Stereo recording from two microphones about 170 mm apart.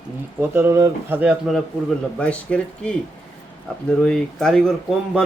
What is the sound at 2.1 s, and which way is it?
Speech, 5° left (ahead or behind).